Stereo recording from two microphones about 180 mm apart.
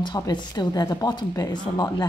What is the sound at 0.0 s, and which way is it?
Speech, 25° left (ahead or behind).